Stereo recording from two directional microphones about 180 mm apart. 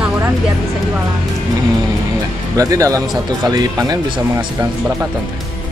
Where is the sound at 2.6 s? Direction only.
20° right (ahead or behind).